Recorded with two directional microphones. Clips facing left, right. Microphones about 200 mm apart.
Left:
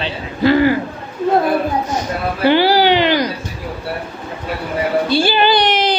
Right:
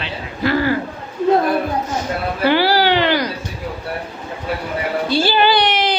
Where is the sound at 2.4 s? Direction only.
20° left (ahead or behind).